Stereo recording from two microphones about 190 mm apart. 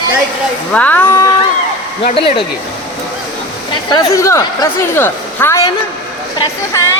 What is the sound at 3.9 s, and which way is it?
A woman's voice, 15° left (ahead or behind).